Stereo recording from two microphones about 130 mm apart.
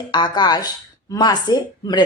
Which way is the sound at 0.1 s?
35° left (ahead or behind).